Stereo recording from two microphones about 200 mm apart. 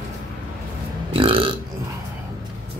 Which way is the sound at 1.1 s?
25° right (ahead or behind).